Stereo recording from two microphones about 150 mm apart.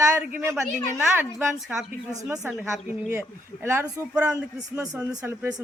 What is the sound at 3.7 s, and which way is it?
A woman's voice, 15° right (ahead or behind).